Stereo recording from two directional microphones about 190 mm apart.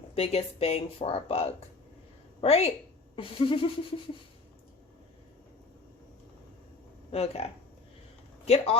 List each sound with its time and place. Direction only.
0.1 s speech: 35° left (ahead or behind)
3.2 s a sound: 30° left (ahead or behind)
7.1 s speech: 35° left (ahead or behind)
8.4 s speech: 30° left (ahead or behind)